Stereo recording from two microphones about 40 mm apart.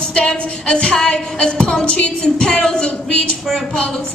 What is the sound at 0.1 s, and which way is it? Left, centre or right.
Music, left.